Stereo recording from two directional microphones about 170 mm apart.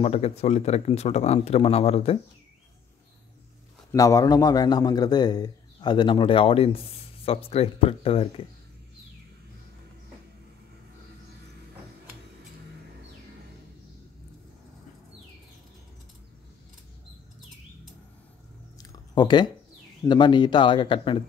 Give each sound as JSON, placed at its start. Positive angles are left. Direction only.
{"t": 0.0, "sound": "speech", "side_deg": 35}
{"t": 3.9, "sound": "a man's voice", "side_deg": 20}
{"t": 18.8, "sound": "a sound", "side_deg": 25}
{"t": 20.1, "sound": "a man's voice", "side_deg": 25}